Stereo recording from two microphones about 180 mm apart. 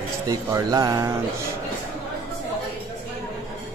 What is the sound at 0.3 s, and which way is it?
Speech, 20° right (ahead or behind).